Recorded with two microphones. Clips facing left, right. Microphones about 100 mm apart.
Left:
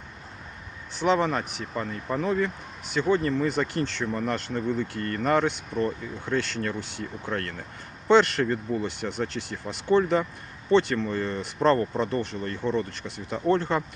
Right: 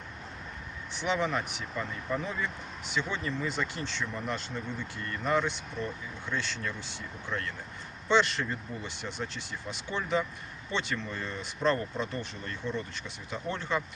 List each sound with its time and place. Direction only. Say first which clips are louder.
0.9 s speech: left 6 dB; 40° left (ahead or behind)